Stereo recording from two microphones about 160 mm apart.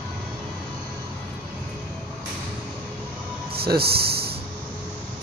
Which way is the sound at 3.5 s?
75° right (ahead or behind).